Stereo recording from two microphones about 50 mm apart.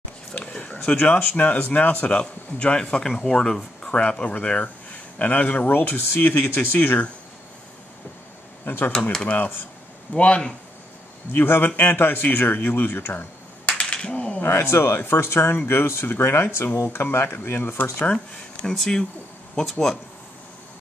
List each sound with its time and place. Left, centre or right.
0.3 s a sound: left
0.8 s speech: left
2.1 s speech: left
3.9 s a man's voice: left
8.6 s speech: left
9.2 s speech: left
11.3 s a man's voice: left
13.7 s a sound: left
14.4 s a man's voice: left
17.9 s speech: left
18.7 s speech: centre